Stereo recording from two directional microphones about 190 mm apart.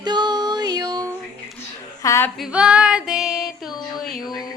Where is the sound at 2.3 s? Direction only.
5° right (ahead or behind).